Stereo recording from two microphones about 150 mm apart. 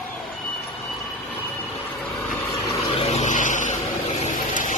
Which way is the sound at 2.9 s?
50° left (ahead or behind).